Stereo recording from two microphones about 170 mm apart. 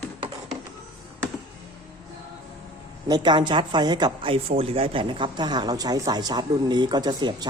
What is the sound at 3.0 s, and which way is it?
Speech, 25° right (ahead or behind).